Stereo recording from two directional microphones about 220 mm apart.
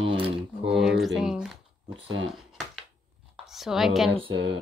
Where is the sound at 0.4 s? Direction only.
Centre (ahead or behind).